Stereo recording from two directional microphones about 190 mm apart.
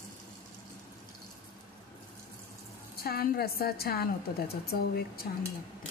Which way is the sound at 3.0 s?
55° left (ahead or behind).